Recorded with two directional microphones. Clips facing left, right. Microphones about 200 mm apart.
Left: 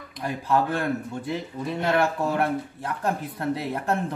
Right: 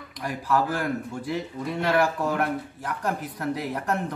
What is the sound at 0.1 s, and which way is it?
Speech, 25° left (ahead or behind).